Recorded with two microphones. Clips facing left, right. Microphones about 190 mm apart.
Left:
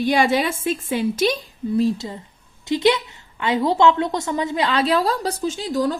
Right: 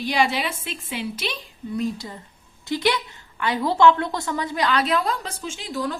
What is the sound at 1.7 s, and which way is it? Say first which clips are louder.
A woman's voice: left 6 dB; 25° left (ahead or behind).